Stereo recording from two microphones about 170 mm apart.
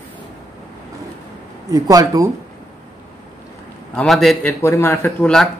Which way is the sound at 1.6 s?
20° right (ahead or behind).